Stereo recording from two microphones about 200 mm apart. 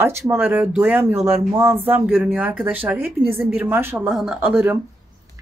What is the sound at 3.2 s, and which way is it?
Speech, 25° right (ahead or behind).